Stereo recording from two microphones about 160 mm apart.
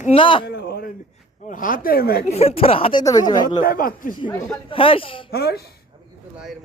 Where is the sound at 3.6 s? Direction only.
60° left (ahead or behind).